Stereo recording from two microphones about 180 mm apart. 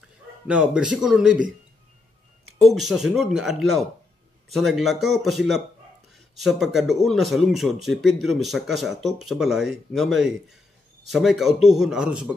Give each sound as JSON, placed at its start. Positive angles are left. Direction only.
{"t": 0.5, "sound": "speech", "side_deg": -5}
{"t": 2.6, "sound": "speech", "side_deg": 0}